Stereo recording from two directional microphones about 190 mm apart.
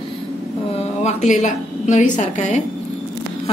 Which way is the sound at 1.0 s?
35° left (ahead or behind).